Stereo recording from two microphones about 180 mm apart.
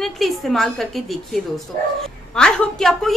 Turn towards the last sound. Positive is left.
turn(degrees=0)  # may be behind; listen again after turning